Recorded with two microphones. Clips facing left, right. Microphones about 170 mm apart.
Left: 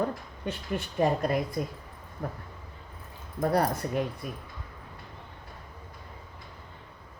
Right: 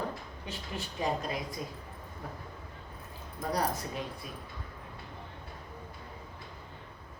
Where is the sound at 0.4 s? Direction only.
55° left (ahead or behind).